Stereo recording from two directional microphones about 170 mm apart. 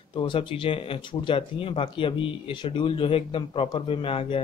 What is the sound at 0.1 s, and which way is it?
Speech, 30° left (ahead or behind).